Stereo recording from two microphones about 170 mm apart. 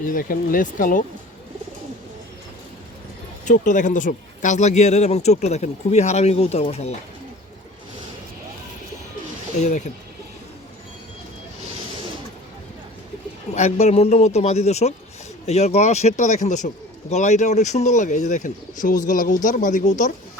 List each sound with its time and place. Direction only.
0.0 s speech: 55° left (ahead or behind)
3.4 s speech: 50° left (ahead or behind)
9.6 s speech: 45° left (ahead or behind)
13.5 s speech: 40° left (ahead or behind)